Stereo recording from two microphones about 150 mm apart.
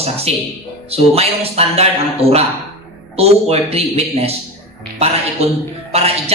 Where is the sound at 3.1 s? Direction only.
40° right (ahead or behind).